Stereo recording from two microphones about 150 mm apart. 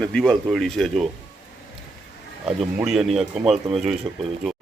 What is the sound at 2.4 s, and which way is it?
Speech, 5° right (ahead or behind).